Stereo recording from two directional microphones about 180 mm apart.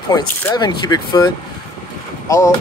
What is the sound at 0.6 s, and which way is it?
Speech, 20° left (ahead or behind).